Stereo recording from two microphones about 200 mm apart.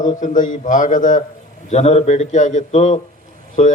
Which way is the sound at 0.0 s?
40° left (ahead or behind).